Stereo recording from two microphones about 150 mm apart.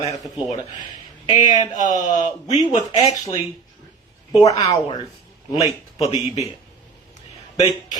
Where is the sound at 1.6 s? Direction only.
55° left (ahead or behind).